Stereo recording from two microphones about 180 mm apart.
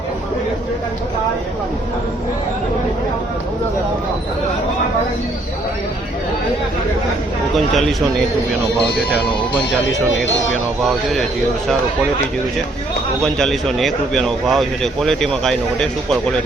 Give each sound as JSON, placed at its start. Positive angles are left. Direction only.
{"t": 10.2, "sound": "speech", "side_deg": 90}
{"t": 10.5, "sound": "speech", "side_deg": 0}
{"t": 13.2, "sound": "speech", "side_deg": 5}